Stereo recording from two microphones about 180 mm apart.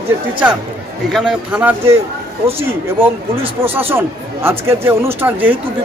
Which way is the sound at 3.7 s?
10° right (ahead or behind).